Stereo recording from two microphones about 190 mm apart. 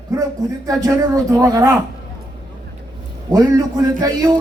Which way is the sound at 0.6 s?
20° right (ahead or behind).